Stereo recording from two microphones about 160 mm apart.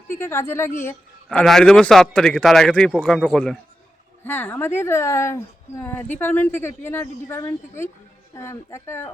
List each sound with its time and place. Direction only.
0.1 s a man's voice: 15° left (ahead or behind)